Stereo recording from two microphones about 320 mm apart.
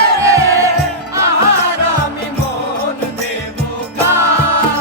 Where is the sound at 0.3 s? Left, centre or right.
Centre.